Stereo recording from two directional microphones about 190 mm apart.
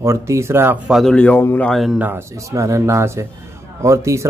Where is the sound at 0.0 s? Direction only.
15° right (ahead or behind).